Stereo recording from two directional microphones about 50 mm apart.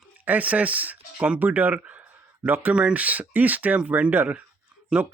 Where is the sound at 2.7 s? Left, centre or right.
Right.